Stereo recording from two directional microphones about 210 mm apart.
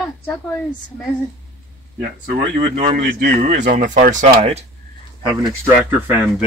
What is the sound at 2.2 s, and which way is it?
Speech, 35° right (ahead or behind).